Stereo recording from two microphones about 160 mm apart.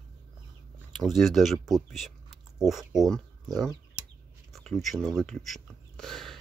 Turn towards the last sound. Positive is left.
turn(degrees=0)  # may be behind; listen again after turning